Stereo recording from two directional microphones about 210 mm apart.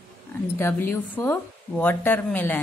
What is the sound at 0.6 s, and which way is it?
Speech, 10° left (ahead or behind).